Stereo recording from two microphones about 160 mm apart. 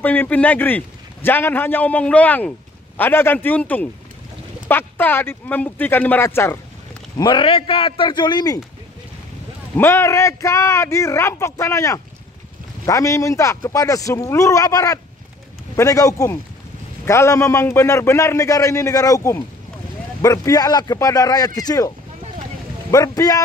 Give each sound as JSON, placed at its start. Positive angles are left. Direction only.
{"t": 0.0, "sound": "a man's voice", "side_deg": 10}
{"t": 7.2, "sound": "a man's voice", "side_deg": 30}
{"t": 9.8, "sound": "a man's voice", "side_deg": 15}